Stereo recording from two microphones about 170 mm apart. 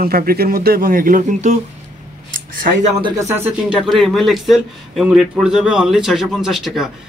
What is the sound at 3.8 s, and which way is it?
Speech, centre (ahead or behind).